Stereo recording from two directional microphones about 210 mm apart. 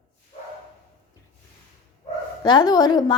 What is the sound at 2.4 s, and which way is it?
Speech, 20° left (ahead or behind).